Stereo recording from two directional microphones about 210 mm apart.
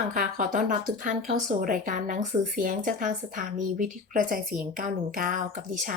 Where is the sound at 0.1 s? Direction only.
40° right (ahead or behind).